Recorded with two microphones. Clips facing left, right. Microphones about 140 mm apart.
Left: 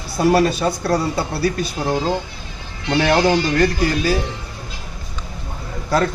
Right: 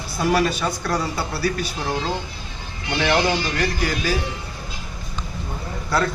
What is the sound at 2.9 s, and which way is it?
A man's voice, 40° left (ahead or behind).